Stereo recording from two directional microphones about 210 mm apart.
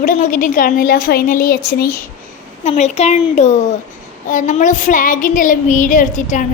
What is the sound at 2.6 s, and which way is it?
A woman's voice, 30° left (ahead or behind).